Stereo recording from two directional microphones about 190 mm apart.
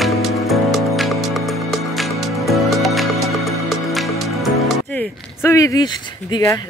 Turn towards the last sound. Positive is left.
turn(degrees=20)  # may be behind; listen again after turning